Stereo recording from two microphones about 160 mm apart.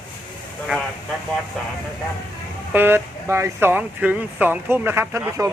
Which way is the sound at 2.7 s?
10° right (ahead or behind).